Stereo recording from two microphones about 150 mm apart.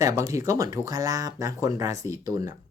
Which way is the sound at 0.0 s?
20° right (ahead or behind).